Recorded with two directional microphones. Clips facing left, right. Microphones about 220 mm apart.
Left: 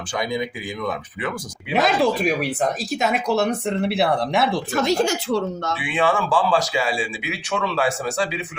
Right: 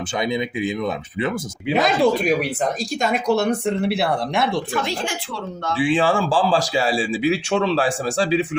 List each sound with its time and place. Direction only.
0.2 s speech: 25° right (ahead or behind)
1.7 s speech: centre (ahead or behind)
4.7 s speech: 45° left (ahead or behind)
5.7 s speech: 30° right (ahead or behind)